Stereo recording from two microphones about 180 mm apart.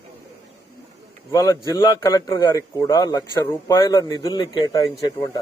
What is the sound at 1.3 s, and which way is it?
A man's voice, 20° left (ahead or behind).